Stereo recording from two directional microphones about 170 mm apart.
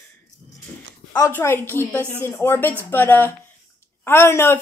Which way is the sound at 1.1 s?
15° left (ahead or behind).